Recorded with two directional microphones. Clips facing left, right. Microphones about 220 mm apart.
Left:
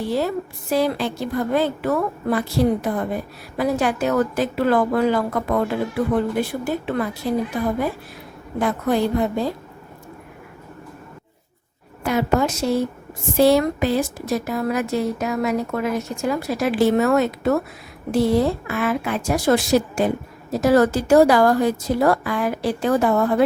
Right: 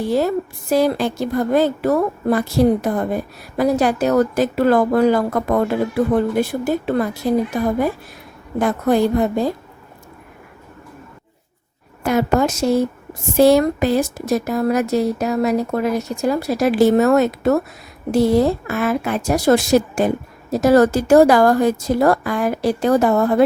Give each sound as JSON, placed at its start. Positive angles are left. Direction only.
{"t": 0.1, "sound": "a woman's voice", "side_deg": -45}
{"t": 8.5, "sound": "a woman's voice", "side_deg": -45}
{"t": 12.0, "sound": "a woman's voice", "side_deg": -45}